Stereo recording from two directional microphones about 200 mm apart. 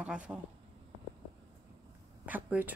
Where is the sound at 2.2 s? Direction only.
10° right (ahead or behind).